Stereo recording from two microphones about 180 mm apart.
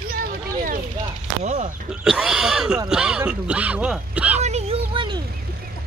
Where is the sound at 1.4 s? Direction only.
40° right (ahead or behind).